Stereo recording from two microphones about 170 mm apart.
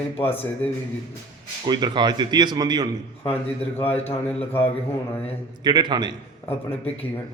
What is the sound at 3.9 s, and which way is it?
Speech, 40° left (ahead or behind).